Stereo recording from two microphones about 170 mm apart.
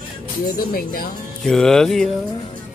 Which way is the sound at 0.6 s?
60° left (ahead or behind).